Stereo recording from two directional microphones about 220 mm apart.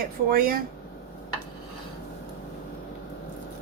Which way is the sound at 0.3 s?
40° right (ahead or behind).